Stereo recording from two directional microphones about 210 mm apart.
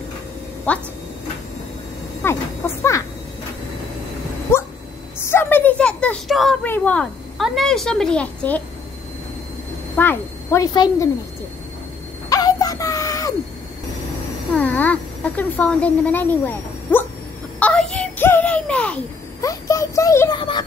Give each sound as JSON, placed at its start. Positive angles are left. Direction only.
{"t": 0.7, "sound": "speech", "side_deg": 5}
{"t": 2.2, "sound": "a sound", "side_deg": 10}
{"t": 4.5, "sound": "dog", "side_deg": 10}
{"t": 5.2, "sound": "speech", "side_deg": 10}
{"t": 9.9, "sound": "speech", "side_deg": 10}
{"t": 12.3, "sound": "a sound", "side_deg": 15}
{"t": 14.5, "sound": "speech", "side_deg": 10}
{"t": 17.6, "sound": "child singing", "side_deg": 5}
{"t": 19.4, "sound": "a sound", "side_deg": 15}